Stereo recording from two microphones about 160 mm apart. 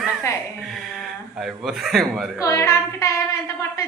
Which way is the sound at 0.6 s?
Centre (ahead or behind).